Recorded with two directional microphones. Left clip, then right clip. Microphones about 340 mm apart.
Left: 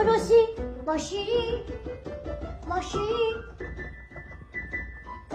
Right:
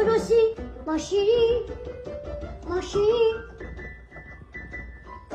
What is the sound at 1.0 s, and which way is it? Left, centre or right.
Female singing, right.